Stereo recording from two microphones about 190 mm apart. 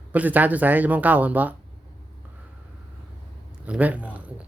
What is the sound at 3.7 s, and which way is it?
Speech, 10° right (ahead or behind).